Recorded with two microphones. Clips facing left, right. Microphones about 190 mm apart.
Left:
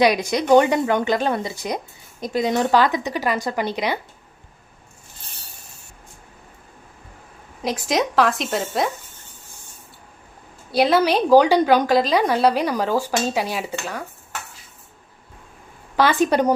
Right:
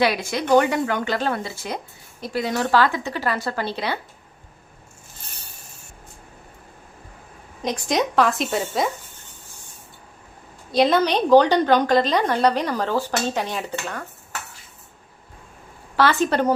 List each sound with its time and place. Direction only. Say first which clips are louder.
0.0 s a woman's voice: left 4 dB; 15° left (ahead or behind)
7.6 s speech: left 1 dB; centre (ahead or behind)
10.7 s a woman's voice: left 1 dB; 5° left (ahead or behind)
16.0 s a woman's voice: left 2 dB; 15° left (ahead or behind)